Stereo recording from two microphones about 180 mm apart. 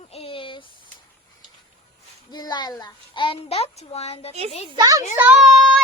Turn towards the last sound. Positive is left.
turn(degrees=0)  # may be behind; listen again after turning